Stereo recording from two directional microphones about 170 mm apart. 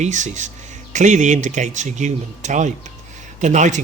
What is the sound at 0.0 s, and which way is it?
Speech, 45° right (ahead or behind).